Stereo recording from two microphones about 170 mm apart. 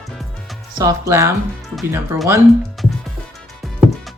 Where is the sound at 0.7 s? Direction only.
20° right (ahead or behind).